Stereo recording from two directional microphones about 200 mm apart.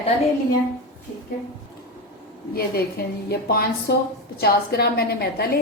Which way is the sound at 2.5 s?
50° left (ahead or behind).